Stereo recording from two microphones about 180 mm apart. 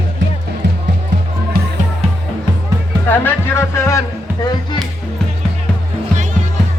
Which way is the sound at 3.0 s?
15° left (ahead or behind).